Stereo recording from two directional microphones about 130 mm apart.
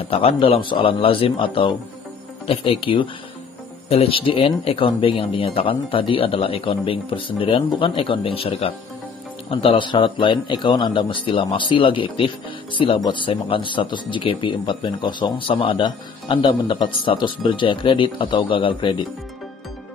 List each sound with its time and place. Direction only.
0.1 s speech: 50° left (ahead or behind)